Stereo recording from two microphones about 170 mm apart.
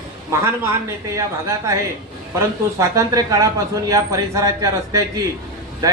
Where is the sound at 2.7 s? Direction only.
20° right (ahead or behind).